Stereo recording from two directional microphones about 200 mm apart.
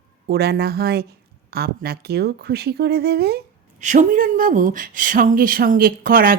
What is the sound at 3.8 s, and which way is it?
Speech, 40° right (ahead or behind).